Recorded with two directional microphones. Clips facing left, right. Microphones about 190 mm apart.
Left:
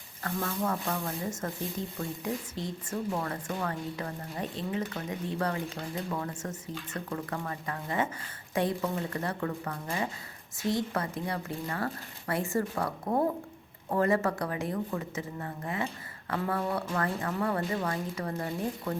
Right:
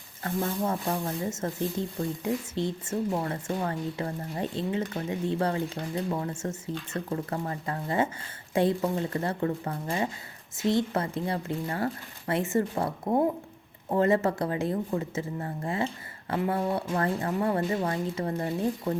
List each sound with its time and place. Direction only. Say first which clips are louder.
0.2 s speech: right 3 dB; 25° right (ahead or behind)